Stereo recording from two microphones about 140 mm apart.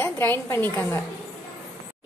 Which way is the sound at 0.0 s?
15° left (ahead or behind).